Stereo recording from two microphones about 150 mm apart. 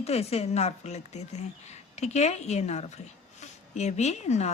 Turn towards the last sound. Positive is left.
turn(degrees=50)  # may be behind; listen again after turning